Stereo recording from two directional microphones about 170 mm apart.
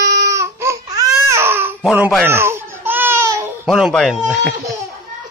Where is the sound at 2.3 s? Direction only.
15° right (ahead or behind).